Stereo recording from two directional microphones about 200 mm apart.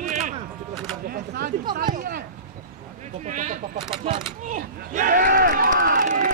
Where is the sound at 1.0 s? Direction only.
50° right (ahead or behind).